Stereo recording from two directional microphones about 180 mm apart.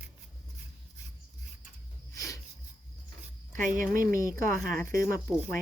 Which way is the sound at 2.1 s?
15° left (ahead or behind).